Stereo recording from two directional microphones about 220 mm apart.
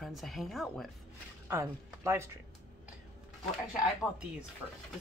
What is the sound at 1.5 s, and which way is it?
Speech, 10° right (ahead or behind).